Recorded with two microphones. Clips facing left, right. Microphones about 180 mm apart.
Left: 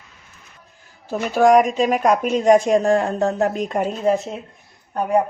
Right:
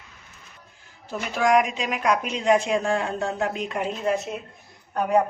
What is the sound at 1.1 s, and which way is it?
A woman's voice, 45° left (ahead or behind).